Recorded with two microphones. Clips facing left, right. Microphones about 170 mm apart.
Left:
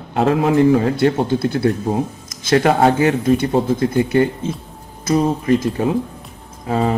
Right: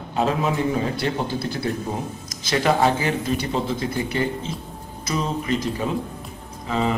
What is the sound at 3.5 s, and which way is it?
Speech, 50° left (ahead or behind).